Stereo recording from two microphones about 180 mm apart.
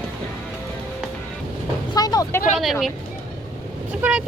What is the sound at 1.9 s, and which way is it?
Vehicle, 20° left (ahead or behind).